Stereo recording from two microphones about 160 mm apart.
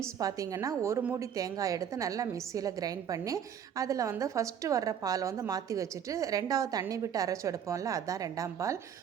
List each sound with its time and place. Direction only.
0.0 s a woman's voice: 20° right (ahead or behind)